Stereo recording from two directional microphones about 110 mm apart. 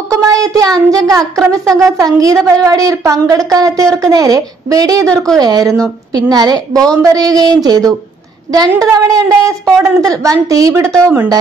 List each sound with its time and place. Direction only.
0.1 s child singing: 30° right (ahead or behind)
1.7 s speech: 30° right (ahead or behind)
5.0 s a woman's voice: 5° left (ahead or behind)
5.4 s speech: 35° right (ahead or behind)